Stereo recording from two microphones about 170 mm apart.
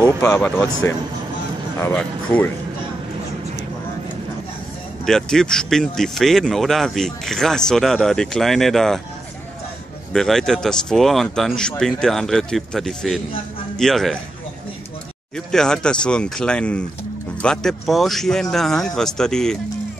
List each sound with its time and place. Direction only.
0.0 s speech: 15° left (ahead or behind)
5.0 s speech: 5° left (ahead or behind)
10.1 s speech: centre (ahead or behind)
15.3 s speech: 5° left (ahead or behind)